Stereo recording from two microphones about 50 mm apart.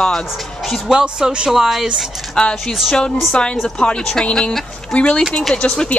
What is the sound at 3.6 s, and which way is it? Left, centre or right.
Speech, centre.